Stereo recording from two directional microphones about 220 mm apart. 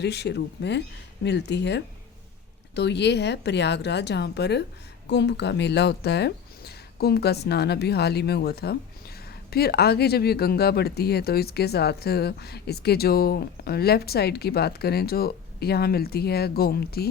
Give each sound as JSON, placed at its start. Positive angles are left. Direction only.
{"t": 0.0, "sound": "speech", "side_deg": 50}